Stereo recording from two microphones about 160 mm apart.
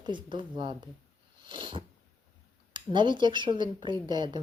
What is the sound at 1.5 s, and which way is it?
Cat, 30° right (ahead or behind).